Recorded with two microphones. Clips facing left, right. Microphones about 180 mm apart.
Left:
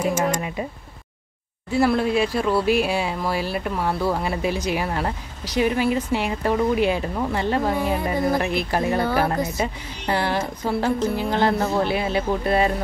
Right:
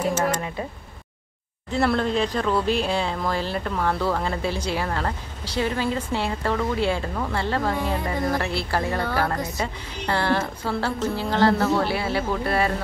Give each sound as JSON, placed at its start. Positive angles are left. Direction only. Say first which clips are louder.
{"t": 0.0, "sound": "a woman's voice", "louder": "left 1 dB", "side_deg": 10}
{"t": 1.7, "sound": "a woman's voice", "louder": "left 3 dB", "side_deg": 5}